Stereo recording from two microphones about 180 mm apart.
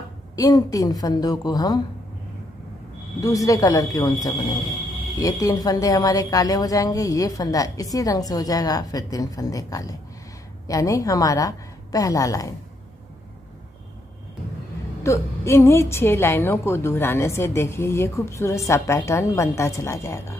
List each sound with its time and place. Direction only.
0.4 s a woman's voice: 20° left (ahead or behind)
3.2 s a woman's voice: 20° left (ahead or behind)
15.0 s a woman's voice: 15° left (ahead or behind)